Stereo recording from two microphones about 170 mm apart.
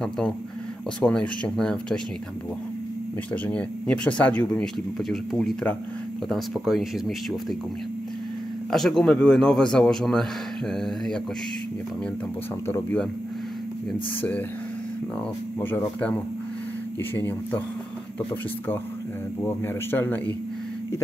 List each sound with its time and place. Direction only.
1.0 s speech: 5° left (ahead or behind)
3.4 s speech: 5° left (ahead or behind)
8.6 s speech: 5° left (ahead or behind)
12.6 s speech: 15° left (ahead or behind)
15.6 s speech: 10° left (ahead or behind)
19.4 s speech: 15° left (ahead or behind)